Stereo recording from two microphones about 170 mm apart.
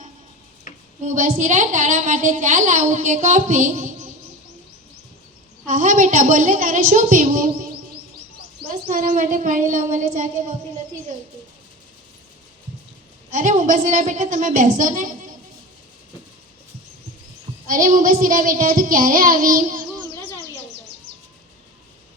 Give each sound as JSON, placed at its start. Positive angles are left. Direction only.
{"t": 1.0, "sound": "a woman's voice", "side_deg": -50}
{"t": 5.6, "sound": "a woman's voice", "side_deg": -50}
{"t": 8.7, "sound": "a woman's voice", "side_deg": -50}
{"t": 13.3, "sound": "a woman's voice", "side_deg": -50}
{"t": 17.7, "sound": "a woman's voice", "side_deg": -55}